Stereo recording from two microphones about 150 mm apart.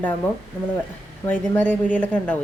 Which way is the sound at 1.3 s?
10° left (ahead or behind).